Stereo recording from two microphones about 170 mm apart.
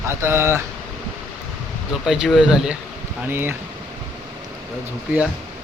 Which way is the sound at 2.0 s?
5° right (ahead or behind).